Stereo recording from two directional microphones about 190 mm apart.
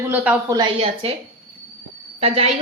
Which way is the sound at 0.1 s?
10° right (ahead or behind).